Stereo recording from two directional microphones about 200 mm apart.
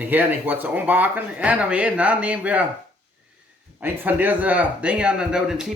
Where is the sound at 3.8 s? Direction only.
10° right (ahead or behind).